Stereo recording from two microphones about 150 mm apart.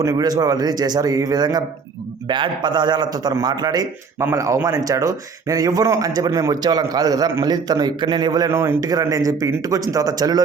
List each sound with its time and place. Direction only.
0.0 s a man's voice: 25° right (ahead or behind)